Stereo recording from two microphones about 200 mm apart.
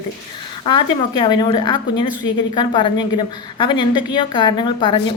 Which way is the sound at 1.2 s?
25° left (ahead or behind).